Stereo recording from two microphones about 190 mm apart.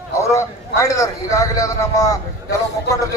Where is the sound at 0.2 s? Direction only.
15° left (ahead or behind).